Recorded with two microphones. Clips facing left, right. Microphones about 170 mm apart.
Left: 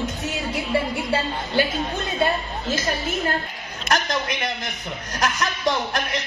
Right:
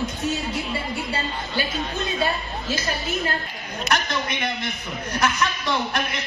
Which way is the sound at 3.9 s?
50° left (ahead or behind).